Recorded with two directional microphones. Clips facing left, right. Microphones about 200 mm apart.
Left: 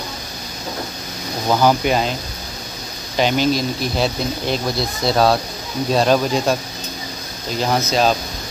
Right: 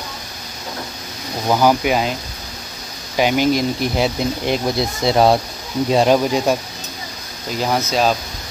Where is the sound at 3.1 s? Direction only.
10° right (ahead or behind).